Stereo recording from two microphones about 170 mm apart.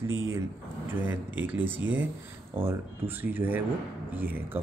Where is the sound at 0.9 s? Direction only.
10° right (ahead or behind).